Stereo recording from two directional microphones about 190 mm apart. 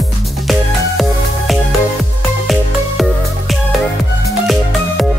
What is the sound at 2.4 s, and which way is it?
Music, centre (ahead or behind).